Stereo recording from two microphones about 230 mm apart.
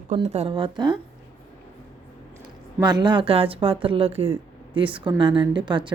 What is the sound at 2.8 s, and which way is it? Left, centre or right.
A woman's voice, centre.